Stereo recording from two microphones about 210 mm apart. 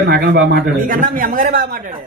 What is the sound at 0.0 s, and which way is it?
Speech, 50° right (ahead or behind).